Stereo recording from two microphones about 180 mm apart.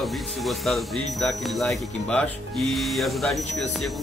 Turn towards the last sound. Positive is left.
turn(degrees=0)  # may be behind; listen again after turning